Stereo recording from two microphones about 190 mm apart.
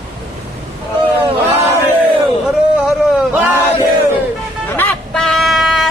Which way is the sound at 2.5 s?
Centre (ahead or behind).